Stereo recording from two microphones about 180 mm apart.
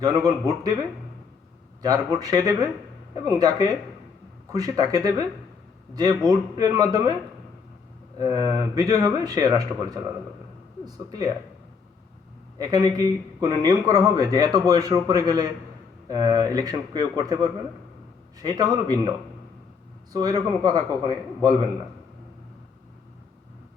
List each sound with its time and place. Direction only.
0.0 s speech: 20° right (ahead or behind)
1.8 s speech: 20° right (ahead or behind)
8.2 s speech: 20° right (ahead or behind)
12.5 s speech: 20° right (ahead or behind)
20.1 s speech: 20° right (ahead or behind)